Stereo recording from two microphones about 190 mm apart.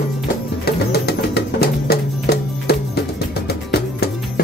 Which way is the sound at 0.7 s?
55° left (ahead or behind).